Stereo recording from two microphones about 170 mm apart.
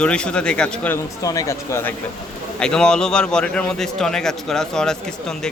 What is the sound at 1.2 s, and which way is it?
Speech, 20° left (ahead or behind).